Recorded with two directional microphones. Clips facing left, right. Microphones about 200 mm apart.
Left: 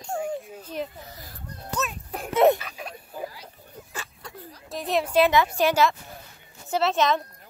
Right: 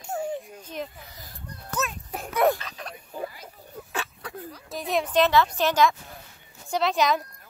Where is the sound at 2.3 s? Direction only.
25° left (ahead or behind).